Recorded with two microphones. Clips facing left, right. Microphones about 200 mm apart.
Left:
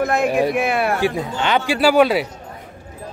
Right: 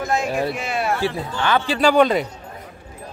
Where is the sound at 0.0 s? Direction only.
60° left (ahead or behind).